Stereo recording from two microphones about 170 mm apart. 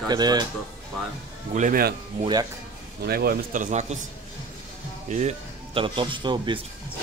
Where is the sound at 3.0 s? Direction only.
60° right (ahead or behind); by 4.0 s 40° right (ahead or behind).